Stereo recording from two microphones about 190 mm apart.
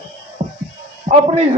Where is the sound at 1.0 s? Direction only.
30° right (ahead or behind).